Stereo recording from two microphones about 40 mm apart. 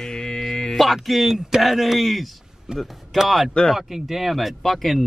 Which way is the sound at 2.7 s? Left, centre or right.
Right.